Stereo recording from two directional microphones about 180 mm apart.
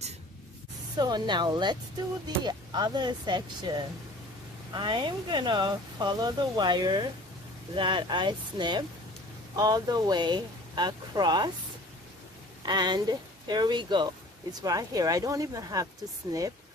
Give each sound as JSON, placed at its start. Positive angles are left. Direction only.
{"t": 0.9, "sound": "speech", "side_deg": -25}
{"t": 12.6, "sound": "speech", "side_deg": -25}